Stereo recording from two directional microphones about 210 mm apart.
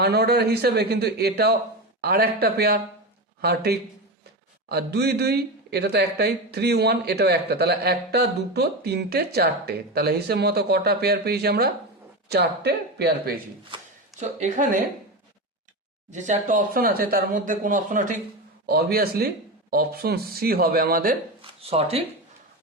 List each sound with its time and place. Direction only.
0.0 s a man's voice: 50° right (ahead or behind)
14.2 s speech: 35° right (ahead or behind)
16.1 s a man's voice: 35° right (ahead or behind)
21.4 s speech: 30° right (ahead or behind)